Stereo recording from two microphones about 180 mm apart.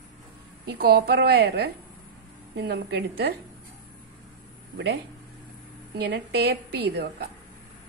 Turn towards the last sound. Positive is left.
turn(degrees=-65)  # may be behind; listen again after turning